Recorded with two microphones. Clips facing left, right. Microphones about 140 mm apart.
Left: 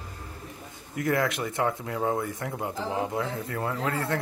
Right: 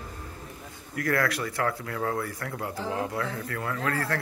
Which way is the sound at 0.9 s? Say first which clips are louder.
Left 1 dB; 20° left (ahead or behind).